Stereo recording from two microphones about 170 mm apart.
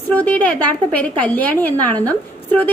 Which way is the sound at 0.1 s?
10° left (ahead or behind).